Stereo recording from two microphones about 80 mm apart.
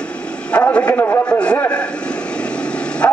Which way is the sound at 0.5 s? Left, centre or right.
Centre.